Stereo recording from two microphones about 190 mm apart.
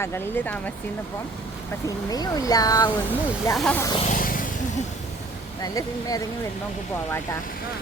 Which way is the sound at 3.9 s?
40° left (ahead or behind).